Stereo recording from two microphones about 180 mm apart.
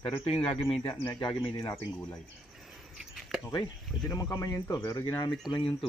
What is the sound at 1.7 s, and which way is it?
Speech, 15° left (ahead or behind).